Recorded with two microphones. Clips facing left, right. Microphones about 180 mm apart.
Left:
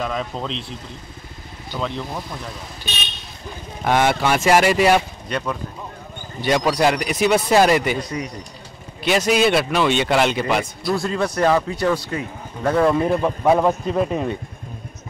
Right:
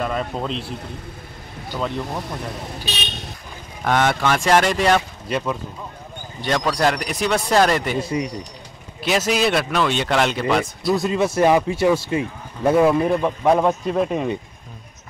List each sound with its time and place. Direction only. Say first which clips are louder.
0.0 s speech: right 1 dB; 5° right (ahead or behind)
0.5 s speech: right 2 dB; 55° right (ahead or behind)
1.7 s speech: right 1 dB; 10° right (ahead or behind)
3.8 s speech: left 1 dB; 10° left (ahead or behind)
5.3 s speech: right 2 dB; 5° right (ahead or behind)
6.4 s speech: left 2 dB; 5° left (ahead or behind)
8.0 s speech: right 4 dB; 25° right (ahead or behind)
9.0 s speech: left 2 dB; centre (ahead or behind)
11.1 s speech: right 2 dB; 25° right (ahead or behind); by 14.3 s centre (ahead or behind)